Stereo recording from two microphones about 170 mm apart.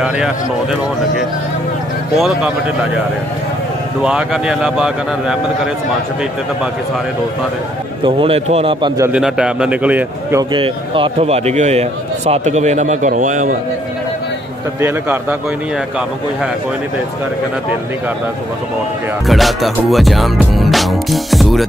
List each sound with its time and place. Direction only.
2.1 s speech: centre (ahead or behind)
4.0 s speech: 5° right (ahead or behind)
8.0 s a man's voice: 35° right (ahead or behind)
9.1 s a man's voice: 5° right (ahead or behind)
10.5 s a man's voice: 30° right (ahead or behind); by 13.6 s 50° right (ahead or behind)
19.2 s music: centre (ahead or behind)